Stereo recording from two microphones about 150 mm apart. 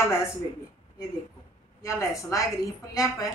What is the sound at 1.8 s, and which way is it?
A man's voice, 20° left (ahead or behind).